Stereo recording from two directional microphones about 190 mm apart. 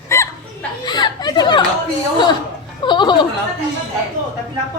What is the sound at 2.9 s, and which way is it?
Speech, 25° left (ahead or behind).